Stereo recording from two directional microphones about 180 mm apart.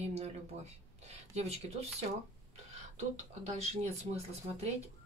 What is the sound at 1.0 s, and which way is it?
Speech, 35° right (ahead or behind).